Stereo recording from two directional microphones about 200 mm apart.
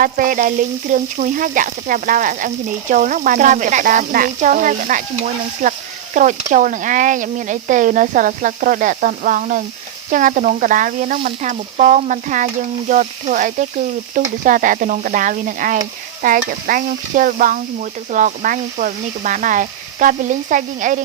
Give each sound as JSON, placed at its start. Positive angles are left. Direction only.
{"t": 0.0, "sound": "stir", "side_deg": -45}